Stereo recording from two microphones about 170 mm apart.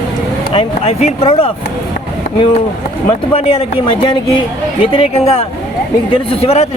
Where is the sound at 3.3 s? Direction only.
35° left (ahead or behind).